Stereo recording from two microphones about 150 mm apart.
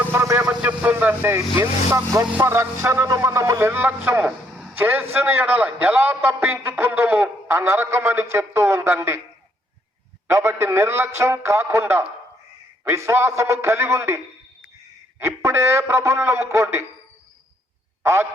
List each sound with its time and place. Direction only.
0.0 s vehicle: 15° right (ahead or behind)
0.3 s vehicle: 5° right (ahead or behind)
2.4 s a man's voice: 15° right (ahead or behind)
10.3 s a man's voice: 15° right (ahead or behind)
15.2 s a man's voice: 15° right (ahead or behind)
18.0 s a man's voice: 20° right (ahead or behind)